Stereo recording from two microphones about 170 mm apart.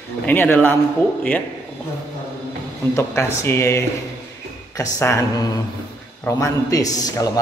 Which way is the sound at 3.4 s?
15° left (ahead or behind).